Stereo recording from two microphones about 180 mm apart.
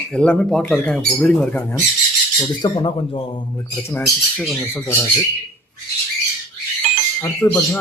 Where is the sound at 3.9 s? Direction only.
5° left (ahead or behind).